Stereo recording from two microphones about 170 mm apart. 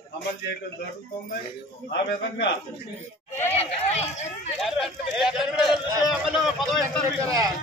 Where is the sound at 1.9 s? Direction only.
90° left.